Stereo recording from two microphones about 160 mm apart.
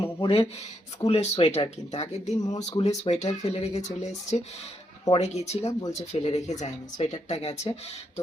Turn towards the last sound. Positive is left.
turn(degrees=40)  # may be behind; listen again after turning